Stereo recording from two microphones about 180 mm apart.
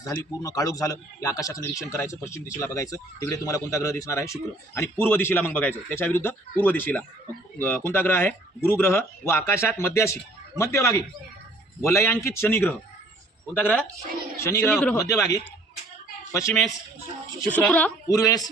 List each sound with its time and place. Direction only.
0.0 s a man's voice: 15° left (ahead or behind)
14.7 s speech: centre (ahead or behind)
14.9 s a man's voice: 15° left (ahead or behind)
17.5 s a man's voice: 5° left (ahead or behind)
18.1 s speech: 20° left (ahead or behind)